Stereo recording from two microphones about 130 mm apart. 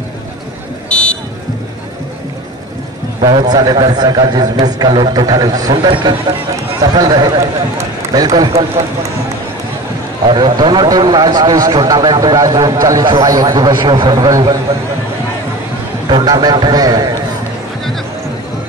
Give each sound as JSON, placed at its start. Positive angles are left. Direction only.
{"t": 0.8, "sound": "buzzer", "side_deg": 10}
{"t": 3.2, "sound": "a man's voice", "side_deg": -35}
{"t": 10.2, "sound": "a man's voice", "side_deg": -35}
{"t": 16.1, "sound": "a man's voice", "side_deg": -35}